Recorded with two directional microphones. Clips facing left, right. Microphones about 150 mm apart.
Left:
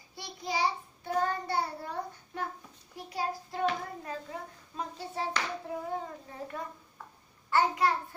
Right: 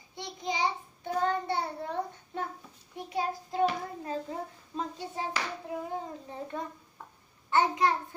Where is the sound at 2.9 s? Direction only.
20° right (ahead or behind).